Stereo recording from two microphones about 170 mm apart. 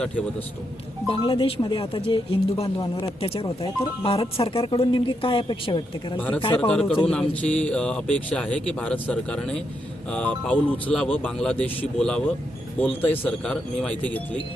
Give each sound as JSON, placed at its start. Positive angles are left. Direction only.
{"t": 1.0, "sound": "speech", "side_deg": 30}
{"t": 6.1, "sound": "speech", "side_deg": 10}